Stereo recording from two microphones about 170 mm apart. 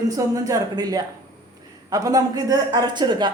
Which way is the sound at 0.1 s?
20° right (ahead or behind).